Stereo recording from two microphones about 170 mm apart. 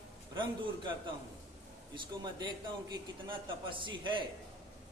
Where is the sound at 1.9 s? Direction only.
25° right (ahead or behind).